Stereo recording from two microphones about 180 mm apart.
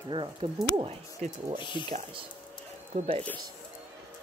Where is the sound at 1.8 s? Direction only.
35° right (ahead or behind).